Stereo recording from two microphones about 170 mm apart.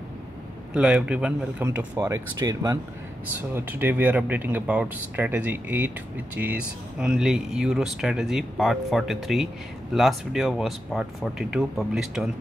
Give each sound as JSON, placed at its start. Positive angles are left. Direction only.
{"t": 0.7, "sound": "speech", "side_deg": -5}
{"t": 2.0, "sound": "speech", "side_deg": -20}